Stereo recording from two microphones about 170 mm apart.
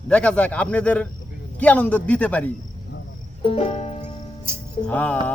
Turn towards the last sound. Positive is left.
turn(degrees=10)  # may be behind; listen again after turning